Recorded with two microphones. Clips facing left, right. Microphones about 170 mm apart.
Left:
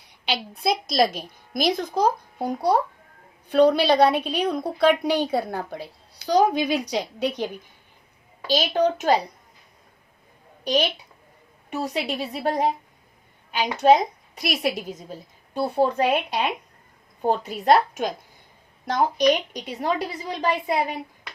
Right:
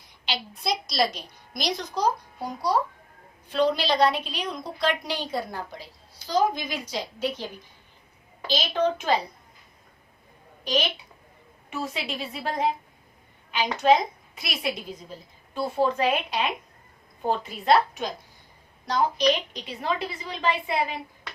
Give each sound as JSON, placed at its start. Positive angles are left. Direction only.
{"t": 0.0, "sound": "a woman's voice", "side_deg": 60}
{"t": 7.3, "sound": "a woman's voice", "side_deg": 15}
{"t": 8.4, "sound": "a woman's voice", "side_deg": 40}
{"t": 11.7, "sound": "a woman's voice", "side_deg": 40}